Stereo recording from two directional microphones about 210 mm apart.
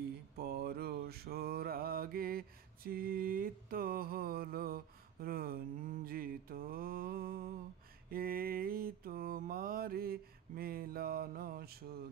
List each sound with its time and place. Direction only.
0.4 s mantra: 50° right (ahead or behind)